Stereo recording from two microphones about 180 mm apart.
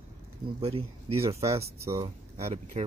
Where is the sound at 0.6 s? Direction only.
35° right (ahead or behind).